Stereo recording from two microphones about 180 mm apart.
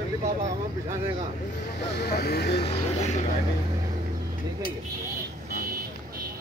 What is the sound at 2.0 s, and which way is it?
Speech, 65° left (ahead or behind).